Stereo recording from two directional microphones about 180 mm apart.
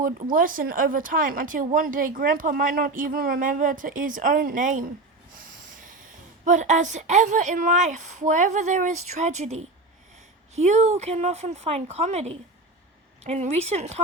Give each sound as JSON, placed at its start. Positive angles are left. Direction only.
{"t": 0.0, "sound": "speech", "side_deg": -50}
{"t": 6.4, "sound": "a woman's voice", "side_deg": -45}